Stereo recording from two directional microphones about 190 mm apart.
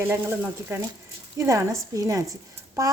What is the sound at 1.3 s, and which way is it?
Speech, 15° right (ahead or behind).